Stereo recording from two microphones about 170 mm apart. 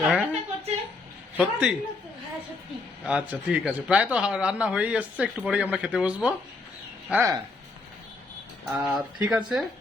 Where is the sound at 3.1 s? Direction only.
5° right (ahead or behind).